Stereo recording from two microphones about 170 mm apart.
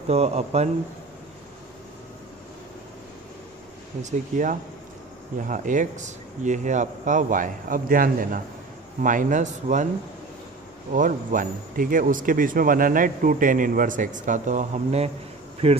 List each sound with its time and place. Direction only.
0.1 s speech: 40° right (ahead or behind)
4.0 s speech: 50° right (ahead or behind)
10.9 s speech: 50° right (ahead or behind)